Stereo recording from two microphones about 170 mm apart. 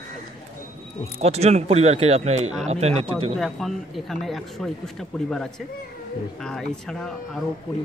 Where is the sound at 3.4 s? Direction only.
Centre (ahead or behind).